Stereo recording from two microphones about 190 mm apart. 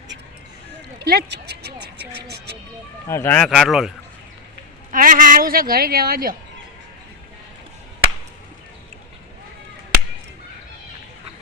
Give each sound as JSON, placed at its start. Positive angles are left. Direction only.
{"t": 0.9, "sound": "a sound", "side_deg": -60}
{"t": 3.1, "sound": "speech", "side_deg": 10}
{"t": 4.9, "sound": "a woman's voice", "side_deg": -45}